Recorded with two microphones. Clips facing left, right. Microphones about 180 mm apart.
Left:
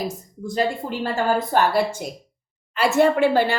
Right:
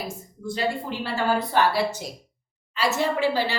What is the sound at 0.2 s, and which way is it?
A woman's voice, 45° left (ahead or behind).